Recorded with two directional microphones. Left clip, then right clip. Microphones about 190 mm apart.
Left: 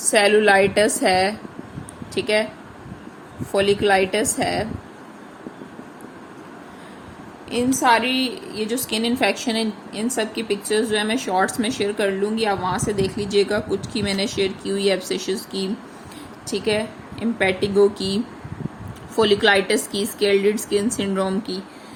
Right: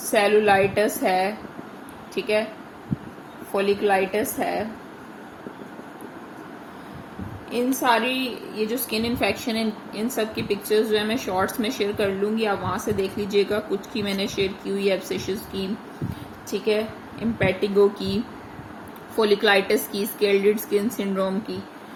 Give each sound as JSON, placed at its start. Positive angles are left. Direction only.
{"t": 0.1, "sound": "a woman's voice", "side_deg": 40}
{"t": 3.5, "sound": "a woman's voice", "side_deg": 40}
{"t": 7.5, "sound": "a woman's voice", "side_deg": 30}